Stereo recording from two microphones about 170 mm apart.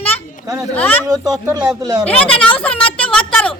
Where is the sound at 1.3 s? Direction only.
20° right (ahead or behind).